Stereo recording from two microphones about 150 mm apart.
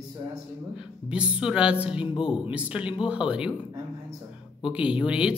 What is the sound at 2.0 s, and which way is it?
Speech, 35° left (ahead or behind).